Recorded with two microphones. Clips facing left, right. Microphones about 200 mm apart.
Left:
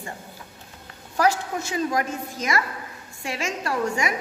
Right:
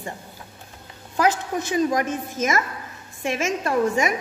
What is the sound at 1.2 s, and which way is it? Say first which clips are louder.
A woman's voice: right 1 dB; 20° right (ahead or behind).